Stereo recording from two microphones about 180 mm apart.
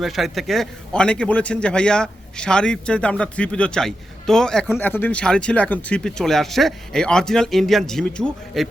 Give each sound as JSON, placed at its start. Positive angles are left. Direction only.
{"t": 0.0, "sound": "a man's voice", "side_deg": 0}